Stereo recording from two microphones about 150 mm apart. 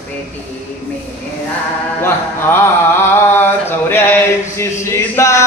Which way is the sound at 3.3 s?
15° left (ahead or behind).